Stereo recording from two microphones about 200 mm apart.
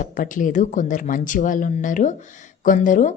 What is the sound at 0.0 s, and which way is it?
Speech, 40° left (ahead or behind).